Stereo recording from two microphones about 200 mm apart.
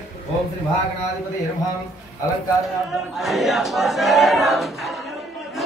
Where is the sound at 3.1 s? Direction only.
Centre (ahead or behind).